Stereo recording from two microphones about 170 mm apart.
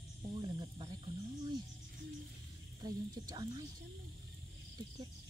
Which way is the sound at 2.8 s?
25° right (ahead or behind).